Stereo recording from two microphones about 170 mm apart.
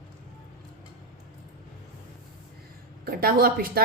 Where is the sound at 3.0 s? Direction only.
60° right (ahead or behind).